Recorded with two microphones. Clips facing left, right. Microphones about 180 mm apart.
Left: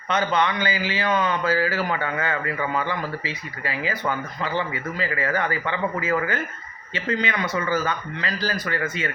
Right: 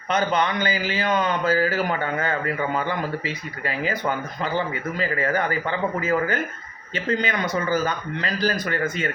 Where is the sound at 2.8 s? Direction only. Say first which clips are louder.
Right 2 dB; 50° right (ahead or behind).